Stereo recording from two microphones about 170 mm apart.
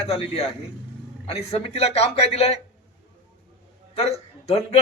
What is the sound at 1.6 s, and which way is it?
Speech, 35° left (ahead or behind).